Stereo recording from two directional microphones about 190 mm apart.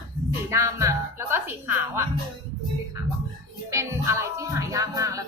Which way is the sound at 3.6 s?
15° right (ahead or behind).